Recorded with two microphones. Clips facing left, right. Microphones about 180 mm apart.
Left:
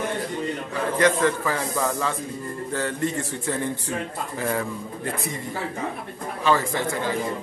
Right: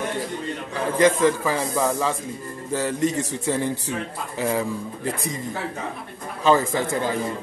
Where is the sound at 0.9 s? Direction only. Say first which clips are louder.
Right 3 dB; 15° right (ahead or behind).